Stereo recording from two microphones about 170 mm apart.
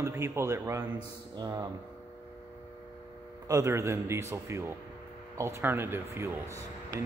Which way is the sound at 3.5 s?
15° right (ahead or behind).